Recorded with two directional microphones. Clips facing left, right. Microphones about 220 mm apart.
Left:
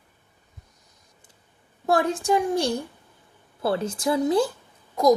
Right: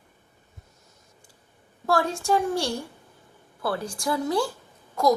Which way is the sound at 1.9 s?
20° left (ahead or behind).